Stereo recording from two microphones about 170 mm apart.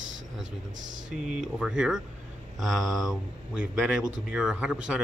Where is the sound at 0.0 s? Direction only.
90° right.